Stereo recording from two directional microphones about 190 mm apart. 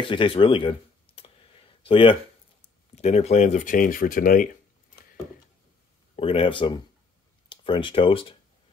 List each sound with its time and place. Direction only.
0.1 s a sound: 25° left (ahead or behind)
3.0 s speech: 35° left (ahead or behind)
6.1 s speech: 30° left (ahead or behind)